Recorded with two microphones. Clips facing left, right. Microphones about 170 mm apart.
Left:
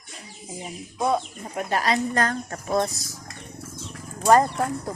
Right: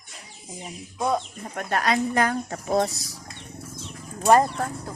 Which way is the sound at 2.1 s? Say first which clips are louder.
Right 1 dB; 15° right (ahead or behind).